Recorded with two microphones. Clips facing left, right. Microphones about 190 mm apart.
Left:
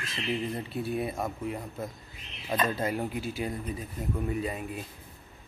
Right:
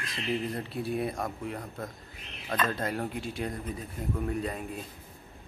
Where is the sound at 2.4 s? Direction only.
20° left (ahead or behind).